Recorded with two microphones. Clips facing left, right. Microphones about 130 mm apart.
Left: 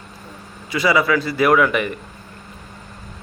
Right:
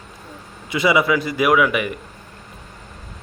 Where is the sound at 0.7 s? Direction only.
20° right (ahead or behind).